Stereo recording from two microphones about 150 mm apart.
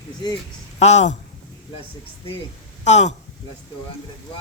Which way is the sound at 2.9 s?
50° left (ahead or behind).